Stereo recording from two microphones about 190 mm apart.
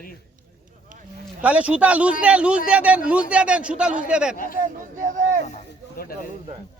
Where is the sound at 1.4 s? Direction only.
5° right (ahead or behind).